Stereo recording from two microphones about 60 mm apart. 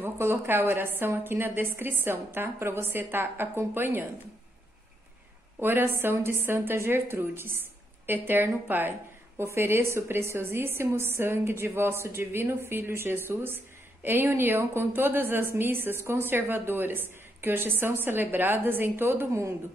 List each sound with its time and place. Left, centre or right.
0.0 s a woman's voice: right
5.6 s a woman's voice: right